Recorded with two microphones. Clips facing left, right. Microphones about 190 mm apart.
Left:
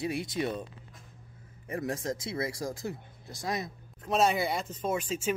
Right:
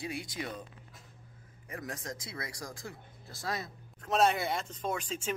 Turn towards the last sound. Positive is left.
turn(degrees=5)  # may be behind; listen again after turning